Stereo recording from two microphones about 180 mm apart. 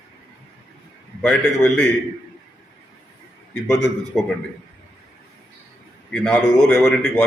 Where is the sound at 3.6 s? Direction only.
5° left (ahead or behind).